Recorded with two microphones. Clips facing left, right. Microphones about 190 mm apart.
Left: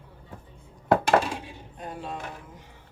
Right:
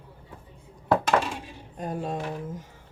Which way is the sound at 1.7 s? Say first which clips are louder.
Right 6 dB; 45° right (ahead or behind).